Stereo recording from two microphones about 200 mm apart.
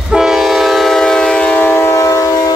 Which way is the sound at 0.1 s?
Centre (ahead or behind).